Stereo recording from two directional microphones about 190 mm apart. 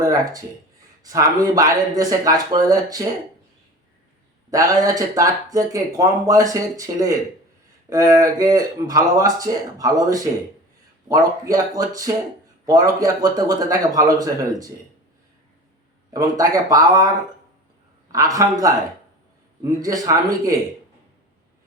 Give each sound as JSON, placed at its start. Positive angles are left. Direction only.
{"t": 0.0, "sound": "speech", "side_deg": -20}
{"t": 4.5, "sound": "speech", "side_deg": -20}
{"t": 16.1, "sound": "speech", "side_deg": -20}
{"t": 18.1, "sound": "speech", "side_deg": -15}